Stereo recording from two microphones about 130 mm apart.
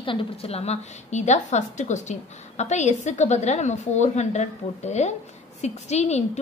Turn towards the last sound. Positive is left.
turn(degrees=55)  # may be behind; listen again after turning